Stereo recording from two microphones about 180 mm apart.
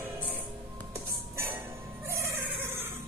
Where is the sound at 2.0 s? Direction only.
15° right (ahead or behind).